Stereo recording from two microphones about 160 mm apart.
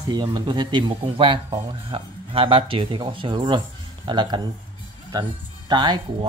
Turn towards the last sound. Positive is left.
turn(degrees=-25)  # may be behind; listen again after turning